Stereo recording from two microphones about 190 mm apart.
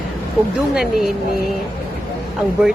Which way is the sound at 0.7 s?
5° right (ahead or behind).